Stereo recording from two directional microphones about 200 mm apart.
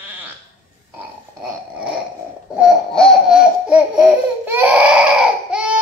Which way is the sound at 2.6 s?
Centre (ahead or behind).